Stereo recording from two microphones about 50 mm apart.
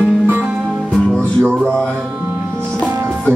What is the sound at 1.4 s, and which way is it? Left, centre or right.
Music, centre.